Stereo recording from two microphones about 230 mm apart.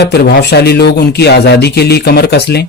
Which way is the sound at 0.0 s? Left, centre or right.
Left.